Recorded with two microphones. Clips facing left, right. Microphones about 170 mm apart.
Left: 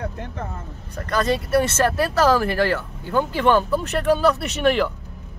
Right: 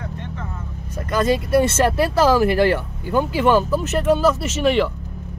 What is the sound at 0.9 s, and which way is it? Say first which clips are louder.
Speech: right 2 dB; 10° right (ahead or behind).